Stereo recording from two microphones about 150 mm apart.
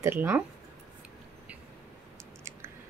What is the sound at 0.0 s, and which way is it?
Speech, 15° right (ahead or behind).